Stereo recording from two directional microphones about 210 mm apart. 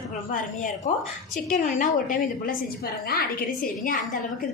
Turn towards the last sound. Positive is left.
turn(degrees=40)  # may be behind; listen again after turning